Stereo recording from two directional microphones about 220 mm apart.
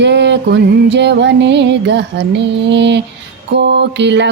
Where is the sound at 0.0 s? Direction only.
55° right (ahead or behind).